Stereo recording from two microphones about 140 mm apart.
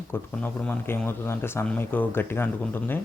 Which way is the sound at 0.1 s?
15° left (ahead or behind).